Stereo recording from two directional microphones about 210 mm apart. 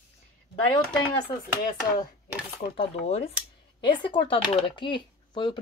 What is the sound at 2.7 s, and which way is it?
Speech, 25° left (ahead or behind).